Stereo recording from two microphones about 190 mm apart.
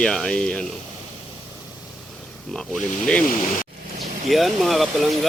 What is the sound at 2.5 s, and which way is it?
Speech, centre (ahead or behind).